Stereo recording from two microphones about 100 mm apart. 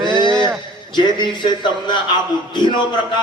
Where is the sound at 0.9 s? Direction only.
50° left (ahead or behind).